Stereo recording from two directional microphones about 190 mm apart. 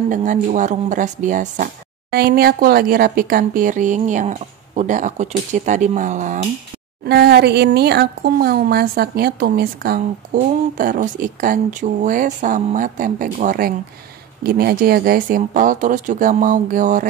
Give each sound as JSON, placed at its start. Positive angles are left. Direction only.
{"t": 0.1, "sound": "speech", "side_deg": -40}
{"t": 7.1, "sound": "speech", "side_deg": -60}